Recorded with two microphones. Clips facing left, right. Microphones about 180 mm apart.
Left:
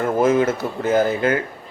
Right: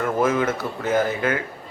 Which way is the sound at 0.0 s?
30° left (ahead or behind).